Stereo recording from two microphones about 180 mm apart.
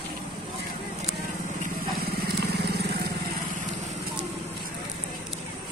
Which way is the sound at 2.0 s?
60° right (ahead or behind).